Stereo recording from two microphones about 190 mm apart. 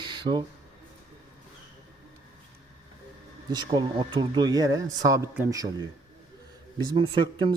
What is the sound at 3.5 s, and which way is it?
Speech, 20° right (ahead or behind).